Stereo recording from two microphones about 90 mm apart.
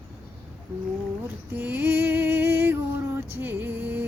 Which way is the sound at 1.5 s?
20° right (ahead or behind).